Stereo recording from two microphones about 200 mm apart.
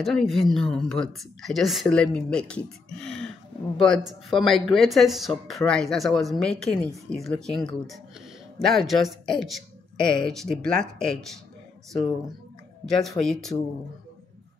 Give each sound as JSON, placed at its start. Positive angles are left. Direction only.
{"t": 0.0, "sound": "speech", "side_deg": 0}
{"t": 12.8, "sound": "speech", "side_deg": 0}